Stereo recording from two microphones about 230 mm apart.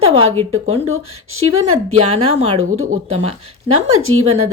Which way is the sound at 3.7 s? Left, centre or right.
Right.